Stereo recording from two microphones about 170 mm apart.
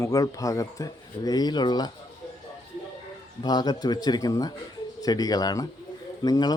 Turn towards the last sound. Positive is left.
turn(degrees=25)  # may be behind; listen again after turning